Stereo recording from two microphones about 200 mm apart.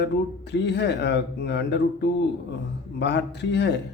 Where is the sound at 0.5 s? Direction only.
60° left (ahead or behind).